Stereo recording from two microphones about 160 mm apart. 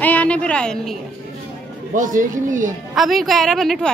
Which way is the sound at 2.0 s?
55° right (ahead or behind).